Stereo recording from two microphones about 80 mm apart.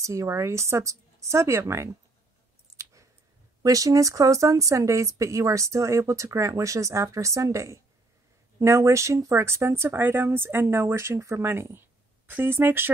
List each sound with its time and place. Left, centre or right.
0.0 s speech: right
2.8 s a sound: right
3.6 s speech: right